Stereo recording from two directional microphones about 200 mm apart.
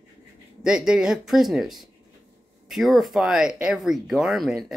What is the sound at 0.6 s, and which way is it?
Speech, 5° right (ahead or behind).